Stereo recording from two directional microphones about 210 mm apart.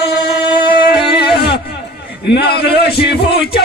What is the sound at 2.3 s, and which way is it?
A man's voice, 50° left (ahead or behind).